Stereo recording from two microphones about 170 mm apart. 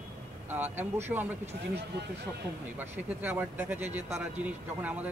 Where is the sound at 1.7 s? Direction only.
80° right.